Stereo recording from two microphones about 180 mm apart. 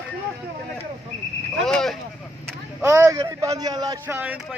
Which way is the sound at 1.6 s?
Centre (ahead or behind).